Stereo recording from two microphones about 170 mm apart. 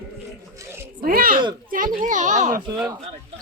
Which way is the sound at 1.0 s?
55° right (ahead or behind).